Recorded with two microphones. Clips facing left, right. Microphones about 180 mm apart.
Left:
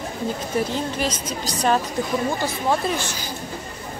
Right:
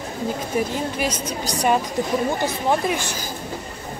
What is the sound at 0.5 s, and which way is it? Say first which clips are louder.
A woman's voice: even; 10° right (ahead or behind).